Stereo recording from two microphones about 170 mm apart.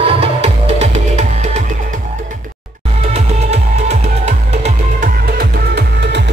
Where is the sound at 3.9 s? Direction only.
40° right (ahead or behind).